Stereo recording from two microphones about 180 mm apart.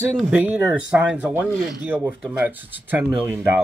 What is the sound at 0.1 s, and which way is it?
Speech, 5° right (ahead or behind).